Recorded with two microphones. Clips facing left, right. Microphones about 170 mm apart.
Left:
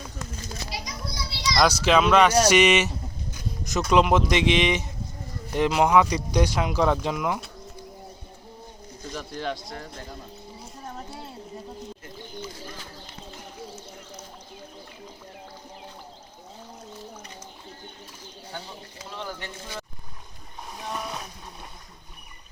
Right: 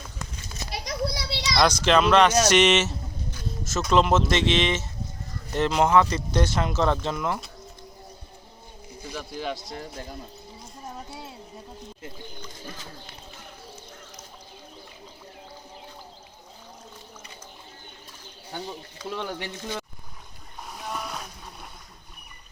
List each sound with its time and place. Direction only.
0.7 s children playing: 70° right (ahead or behind)
1.6 s speech: 10° left (ahead or behind)
9.0 s speech: 10° right (ahead or behind)
19.1 s speech: 65° right (ahead or behind)
20.8 s splash: centre (ahead or behind)